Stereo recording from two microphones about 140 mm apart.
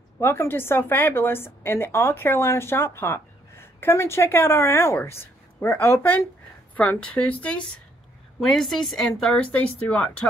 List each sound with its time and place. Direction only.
0.2 s a woman's voice: 15° left (ahead or behind)